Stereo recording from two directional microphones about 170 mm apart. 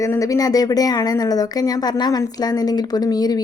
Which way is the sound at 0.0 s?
20° left (ahead or behind).